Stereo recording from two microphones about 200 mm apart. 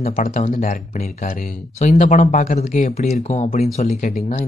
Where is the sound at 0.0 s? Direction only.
40° left (ahead or behind).